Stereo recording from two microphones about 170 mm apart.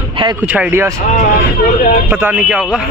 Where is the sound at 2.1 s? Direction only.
10° right (ahead or behind).